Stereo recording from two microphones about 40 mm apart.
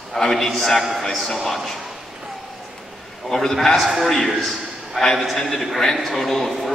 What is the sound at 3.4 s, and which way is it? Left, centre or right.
A man's voice, centre.